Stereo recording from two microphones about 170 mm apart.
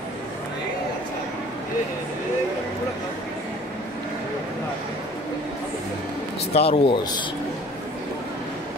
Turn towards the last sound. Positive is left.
turn(degrees=30)  # may be behind; listen again after turning